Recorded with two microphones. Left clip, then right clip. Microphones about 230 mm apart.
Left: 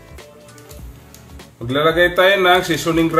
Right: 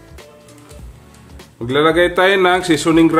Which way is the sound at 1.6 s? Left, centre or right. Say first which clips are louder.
Right 1 dB; right.